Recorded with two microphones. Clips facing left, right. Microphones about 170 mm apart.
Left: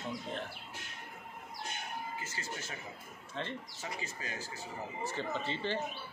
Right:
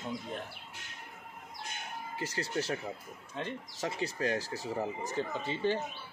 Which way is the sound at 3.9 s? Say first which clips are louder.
Right 13 dB; 75° right (ahead or behind).